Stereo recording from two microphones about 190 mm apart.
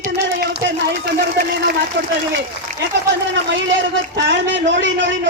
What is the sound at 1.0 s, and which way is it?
Speech, 55° right (ahead or behind).